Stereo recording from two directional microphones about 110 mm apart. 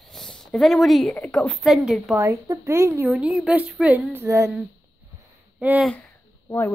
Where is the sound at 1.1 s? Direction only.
15° left (ahead or behind).